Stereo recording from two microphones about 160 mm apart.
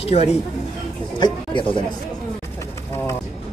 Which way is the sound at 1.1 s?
30° left (ahead or behind).